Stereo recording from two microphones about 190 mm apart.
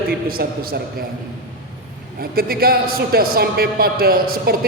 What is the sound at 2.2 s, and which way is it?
A man's voice, 50° right (ahead or behind).